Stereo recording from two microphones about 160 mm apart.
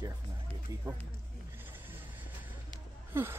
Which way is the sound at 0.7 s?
20° right (ahead or behind).